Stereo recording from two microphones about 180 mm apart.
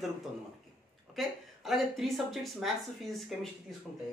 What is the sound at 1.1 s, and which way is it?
A woman's voice, centre (ahead or behind).